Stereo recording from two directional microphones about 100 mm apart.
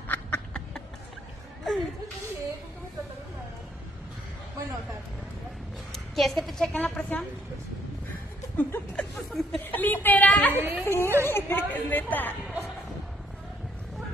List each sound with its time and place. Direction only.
0.1 s a sound: 10° left (ahead or behind)
6.1 s a woman's voice: centre (ahead or behind)
8.5 s a sound: 15° left (ahead or behind)
9.4 s speech: centre (ahead or behind)
9.7 s a woman's voice: 20° left (ahead or behind)
10.5 s a woman's voice: 20° right (ahead or behind)
11.2 s a woman's voice: 20° left (ahead or behind)